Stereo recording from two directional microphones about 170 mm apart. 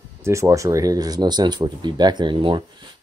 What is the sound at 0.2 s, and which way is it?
Speech, 15° right (ahead or behind).